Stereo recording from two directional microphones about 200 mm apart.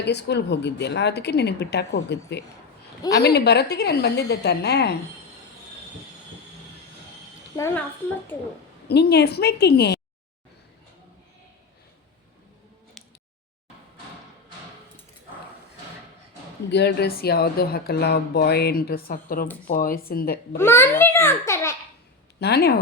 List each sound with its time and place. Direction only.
0.0 s a woman's voice: 55° left (ahead or behind)
7.6 s a child's voice: 15° left (ahead or behind)
8.9 s a woman's voice: 55° left (ahead or behind)
13.0 s a sound: centre (ahead or behind)
16.7 s speech: 55° left (ahead or behind)
20.6 s a child's voice: 10° left (ahead or behind)
22.4 s speech: 55° left (ahead or behind)